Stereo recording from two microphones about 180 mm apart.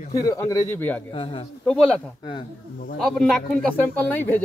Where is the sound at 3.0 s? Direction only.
5° left (ahead or behind).